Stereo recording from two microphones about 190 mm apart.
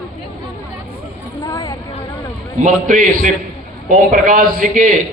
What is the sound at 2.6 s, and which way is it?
Speech, 40° right (ahead or behind).